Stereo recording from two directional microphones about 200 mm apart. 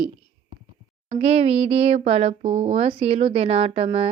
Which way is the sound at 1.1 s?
30° right (ahead or behind).